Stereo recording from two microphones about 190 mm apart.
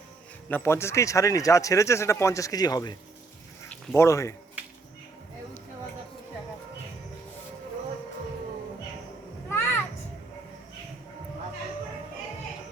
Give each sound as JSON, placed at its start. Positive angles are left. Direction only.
{"t": 0.4, "sound": "speech", "side_deg": 10}
{"t": 9.5, "sound": "children playing", "side_deg": 10}